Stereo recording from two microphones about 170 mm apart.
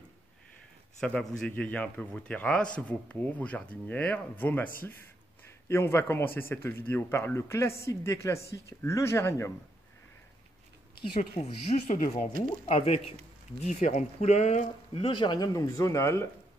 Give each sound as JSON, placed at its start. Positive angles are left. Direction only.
{"t": 1.0, "sound": "speech", "side_deg": 5}
{"t": 5.7, "sound": "speech", "side_deg": 15}
{"t": 11.0, "sound": "speech", "side_deg": 50}